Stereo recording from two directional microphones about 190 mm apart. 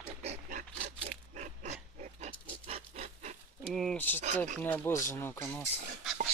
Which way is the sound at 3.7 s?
Centre (ahead or behind).